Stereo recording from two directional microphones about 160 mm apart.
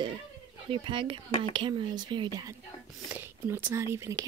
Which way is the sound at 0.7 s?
30° right (ahead or behind).